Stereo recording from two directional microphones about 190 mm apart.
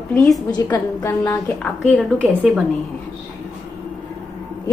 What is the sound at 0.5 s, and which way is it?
Speech, 20° left (ahead or behind).